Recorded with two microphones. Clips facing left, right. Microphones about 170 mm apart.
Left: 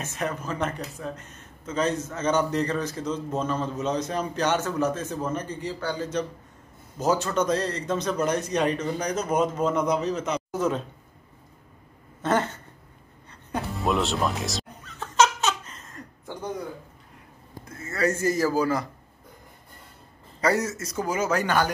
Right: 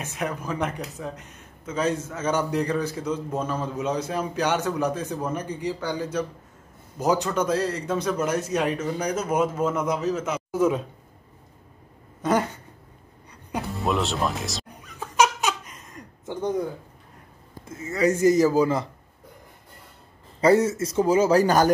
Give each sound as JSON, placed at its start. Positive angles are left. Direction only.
{"t": 0.0, "sound": "a man's voice", "side_deg": -10}
{"t": 12.2, "sound": "a man's voice", "side_deg": -10}
{"t": 13.8, "sound": "speech", "side_deg": 0}
{"t": 14.8, "sound": "giggle", "side_deg": -10}
{"t": 17.6, "sound": "a man's voice", "side_deg": -15}
{"t": 20.3, "sound": "a man's voice", "side_deg": -25}